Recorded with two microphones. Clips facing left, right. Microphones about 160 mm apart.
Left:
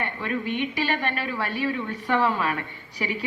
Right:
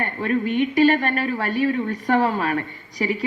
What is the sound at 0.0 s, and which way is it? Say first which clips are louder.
A woman's voice: right 6 dB; 45° right (ahead or behind).